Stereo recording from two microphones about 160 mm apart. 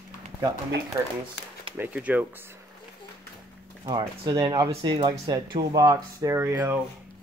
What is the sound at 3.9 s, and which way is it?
Speech, 30° right (ahead or behind).